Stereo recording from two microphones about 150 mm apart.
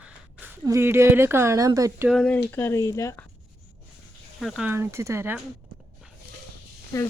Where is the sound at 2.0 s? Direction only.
5° left (ahead or behind).